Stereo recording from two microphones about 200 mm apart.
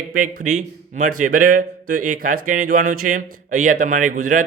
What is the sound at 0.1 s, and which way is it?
A man's voice, 40° right (ahead or behind).